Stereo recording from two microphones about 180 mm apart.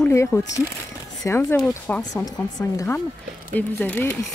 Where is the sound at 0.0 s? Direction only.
15° left (ahead or behind).